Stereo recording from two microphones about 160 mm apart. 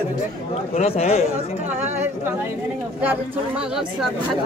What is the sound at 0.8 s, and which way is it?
Speech, 40° left (ahead or behind).